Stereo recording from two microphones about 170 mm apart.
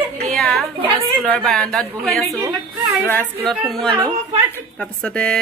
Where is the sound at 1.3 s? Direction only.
5° left (ahead or behind).